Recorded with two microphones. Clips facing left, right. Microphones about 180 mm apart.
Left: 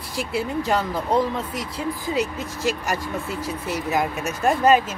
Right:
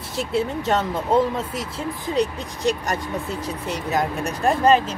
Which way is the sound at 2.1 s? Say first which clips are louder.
Right 4 dB; 5° left (ahead or behind).